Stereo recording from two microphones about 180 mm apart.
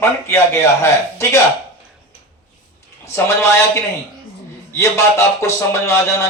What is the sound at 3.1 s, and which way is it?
Speech, 15° left (ahead or behind).